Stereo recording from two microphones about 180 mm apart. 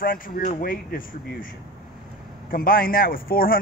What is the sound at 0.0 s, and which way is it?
Speech, 50° left (ahead or behind).